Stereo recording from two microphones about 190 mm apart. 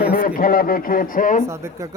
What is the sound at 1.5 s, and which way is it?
Speech, 15° right (ahead or behind).